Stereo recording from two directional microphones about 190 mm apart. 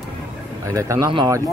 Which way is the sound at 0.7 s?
15° right (ahead or behind).